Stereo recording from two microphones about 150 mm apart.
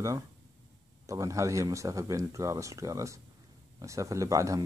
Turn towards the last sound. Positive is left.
turn(degrees=-20)  # may be behind; listen again after turning